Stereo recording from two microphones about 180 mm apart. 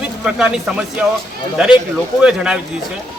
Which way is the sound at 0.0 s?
5° right (ahead or behind).